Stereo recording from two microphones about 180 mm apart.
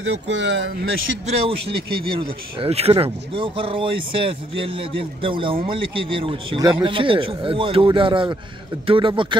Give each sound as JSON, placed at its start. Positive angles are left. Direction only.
{"t": 0.1, "sound": "speech", "side_deg": -90}
{"t": 1.2, "sound": "a man's voice", "side_deg": -30}